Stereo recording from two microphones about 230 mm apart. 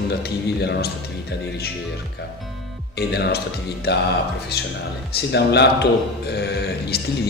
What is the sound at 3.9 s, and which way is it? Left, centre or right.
Speech, left.